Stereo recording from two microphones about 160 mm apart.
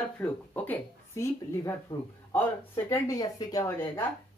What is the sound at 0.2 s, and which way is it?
Speech, 10° left (ahead or behind).